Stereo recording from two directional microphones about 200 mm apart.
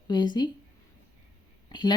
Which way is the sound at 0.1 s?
20° left (ahead or behind).